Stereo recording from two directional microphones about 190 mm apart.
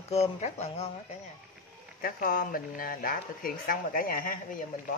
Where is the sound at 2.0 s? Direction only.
45° left (ahead or behind).